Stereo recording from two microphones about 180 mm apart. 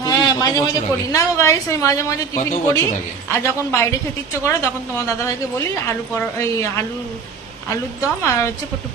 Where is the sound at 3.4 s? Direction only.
15° left (ahead or behind).